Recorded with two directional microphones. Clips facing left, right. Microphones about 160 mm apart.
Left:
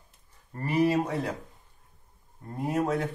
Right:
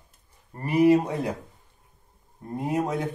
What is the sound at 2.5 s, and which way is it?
Speech, 15° right (ahead or behind).